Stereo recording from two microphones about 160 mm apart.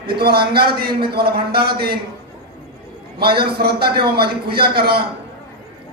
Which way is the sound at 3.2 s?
75° right (ahead or behind).